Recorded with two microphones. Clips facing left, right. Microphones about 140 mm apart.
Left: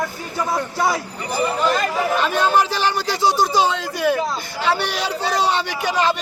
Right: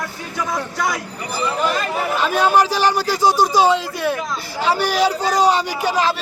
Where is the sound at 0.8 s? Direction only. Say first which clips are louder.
Left 3 dB; 30° left (ahead or behind).